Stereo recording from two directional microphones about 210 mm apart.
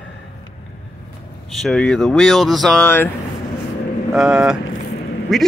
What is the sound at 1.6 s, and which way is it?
Speech, 5° left (ahead or behind).